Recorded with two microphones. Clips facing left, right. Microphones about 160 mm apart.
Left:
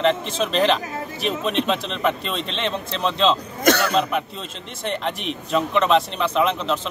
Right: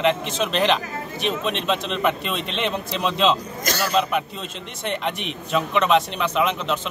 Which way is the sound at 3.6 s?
60° left (ahead or behind).